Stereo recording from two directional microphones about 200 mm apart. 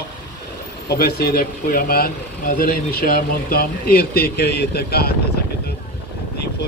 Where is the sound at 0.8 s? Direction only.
50° left (ahead or behind).